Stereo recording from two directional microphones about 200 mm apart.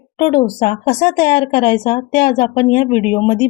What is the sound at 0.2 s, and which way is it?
Speech, 35° left (ahead or behind).